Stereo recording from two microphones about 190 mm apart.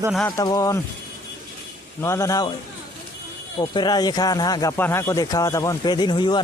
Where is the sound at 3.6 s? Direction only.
20° left (ahead or behind).